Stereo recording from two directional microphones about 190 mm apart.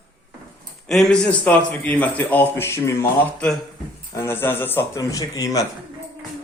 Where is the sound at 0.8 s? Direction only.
5° left (ahead or behind).